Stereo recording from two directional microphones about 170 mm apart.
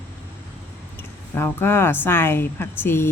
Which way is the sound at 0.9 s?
15° left (ahead or behind).